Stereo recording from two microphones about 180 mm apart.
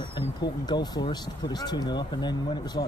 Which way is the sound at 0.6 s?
25° left (ahead or behind).